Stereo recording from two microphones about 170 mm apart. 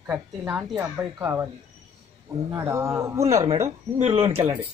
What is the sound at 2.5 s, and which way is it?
A woman's voice, 15° right (ahead or behind).